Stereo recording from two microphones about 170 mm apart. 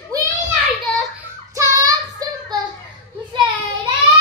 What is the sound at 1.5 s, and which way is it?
Child singing, 20° right (ahead or behind).